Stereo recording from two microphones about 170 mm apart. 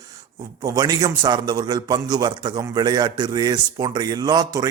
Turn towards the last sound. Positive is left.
turn(degrees=-20)  # may be behind; listen again after turning